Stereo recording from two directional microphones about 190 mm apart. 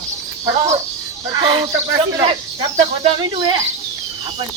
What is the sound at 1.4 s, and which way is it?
Speech, 25° right (ahead or behind).